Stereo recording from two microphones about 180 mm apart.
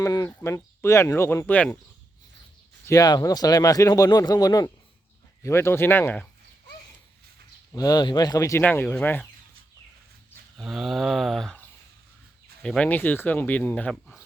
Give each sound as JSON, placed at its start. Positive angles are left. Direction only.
{"t": 0.0, "sound": "speech", "side_deg": 20}
{"t": 2.8, "sound": "speech", "side_deg": 20}
{"t": 7.7, "sound": "speech", "side_deg": 20}
{"t": 10.6, "sound": "a sound", "side_deg": 0}
{"t": 12.6, "sound": "speech", "side_deg": 5}